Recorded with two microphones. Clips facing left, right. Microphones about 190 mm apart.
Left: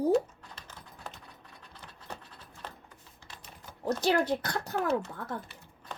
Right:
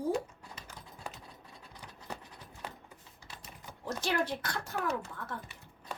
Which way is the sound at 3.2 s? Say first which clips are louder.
Even; 10° right (ahead or behind).